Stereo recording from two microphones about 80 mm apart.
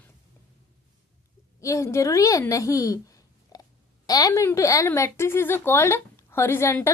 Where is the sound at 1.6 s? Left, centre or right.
Left.